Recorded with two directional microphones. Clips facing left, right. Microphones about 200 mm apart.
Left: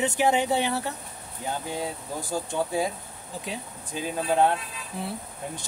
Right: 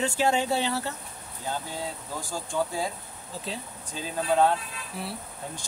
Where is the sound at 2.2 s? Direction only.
20° left (ahead or behind).